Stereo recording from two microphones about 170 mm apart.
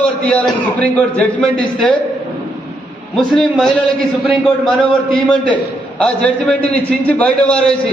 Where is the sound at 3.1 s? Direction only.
Centre (ahead or behind).